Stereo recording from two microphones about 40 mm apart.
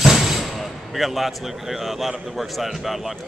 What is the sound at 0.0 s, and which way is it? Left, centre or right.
Speech, centre.